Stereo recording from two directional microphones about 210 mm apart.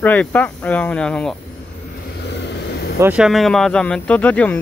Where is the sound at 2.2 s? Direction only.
55° left (ahead or behind).